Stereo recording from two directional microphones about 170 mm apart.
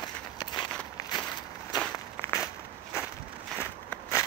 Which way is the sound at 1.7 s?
25° left (ahead or behind).